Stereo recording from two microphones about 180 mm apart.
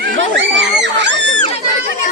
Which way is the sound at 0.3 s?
80° right.